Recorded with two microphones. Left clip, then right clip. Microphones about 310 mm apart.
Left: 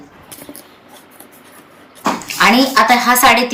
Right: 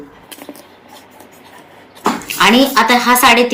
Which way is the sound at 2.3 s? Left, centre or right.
Centre.